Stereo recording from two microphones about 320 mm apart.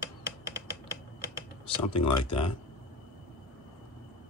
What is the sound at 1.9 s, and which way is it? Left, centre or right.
Speech, centre.